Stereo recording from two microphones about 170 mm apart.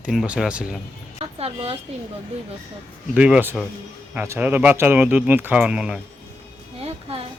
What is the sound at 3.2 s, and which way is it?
Speech, 5° right (ahead or behind).